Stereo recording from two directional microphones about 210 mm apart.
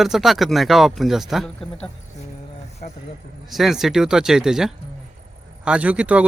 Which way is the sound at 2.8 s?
40° left (ahead or behind).